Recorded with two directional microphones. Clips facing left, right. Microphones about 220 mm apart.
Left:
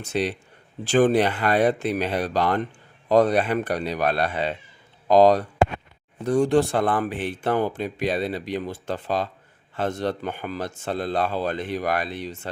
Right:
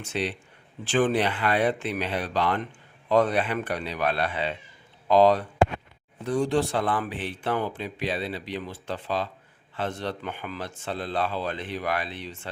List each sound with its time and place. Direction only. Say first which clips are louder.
0.0 s speech: left 4 dB; 40° left (ahead or behind)